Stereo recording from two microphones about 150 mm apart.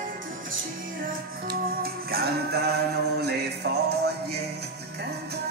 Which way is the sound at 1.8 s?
90° right.